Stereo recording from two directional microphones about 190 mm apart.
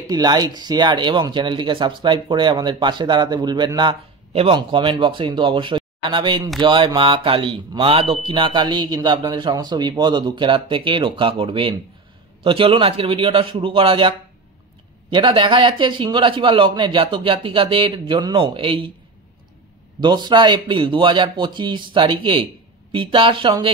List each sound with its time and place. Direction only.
0.1 s speech: 20° right (ahead or behind)
20.0 s speech: 25° right (ahead or behind)